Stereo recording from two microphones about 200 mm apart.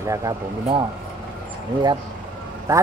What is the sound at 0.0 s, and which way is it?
Speech, 15° right (ahead or behind).